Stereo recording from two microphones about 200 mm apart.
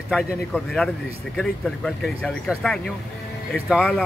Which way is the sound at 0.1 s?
5° left (ahead or behind).